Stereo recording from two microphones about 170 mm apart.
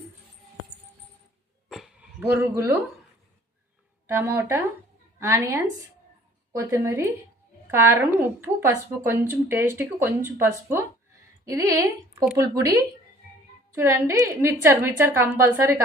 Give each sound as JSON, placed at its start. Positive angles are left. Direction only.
{"t": 2.3, "sound": "a woman's voice", "side_deg": -15}
{"t": 4.1, "sound": "a woman's voice", "side_deg": -15}